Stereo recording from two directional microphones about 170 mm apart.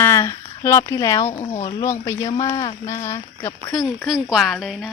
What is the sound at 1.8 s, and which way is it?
Speech, 20° left (ahead or behind).